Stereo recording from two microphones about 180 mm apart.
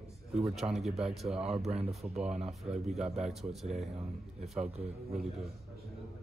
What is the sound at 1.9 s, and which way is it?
Speech, 5° right (ahead or behind).